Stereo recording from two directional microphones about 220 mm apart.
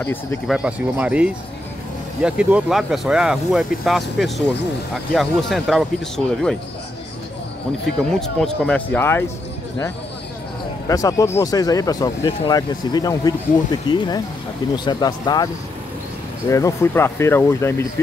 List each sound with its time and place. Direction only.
0.0 s speech: 10° left (ahead or behind)
0.6 s speech: 5° right (ahead or behind)
8.0 s speech: 5° left (ahead or behind)
10.9 s speech: 15° left (ahead or behind)